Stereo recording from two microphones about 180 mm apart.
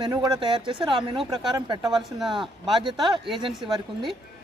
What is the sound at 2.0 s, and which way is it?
Speech, centre (ahead or behind).